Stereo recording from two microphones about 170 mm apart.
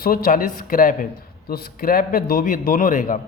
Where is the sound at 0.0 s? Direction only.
60° left (ahead or behind).